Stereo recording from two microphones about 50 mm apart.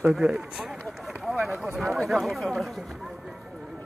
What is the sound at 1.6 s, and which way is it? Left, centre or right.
Speech, centre.